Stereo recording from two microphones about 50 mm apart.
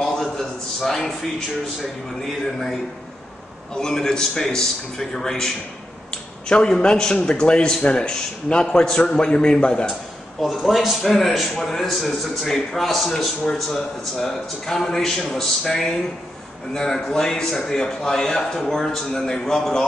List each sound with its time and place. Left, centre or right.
0.0 s a sound: centre
2.2 s a man's voice: centre
6.5 s a man's voice: centre
10.4 s a man's voice: centre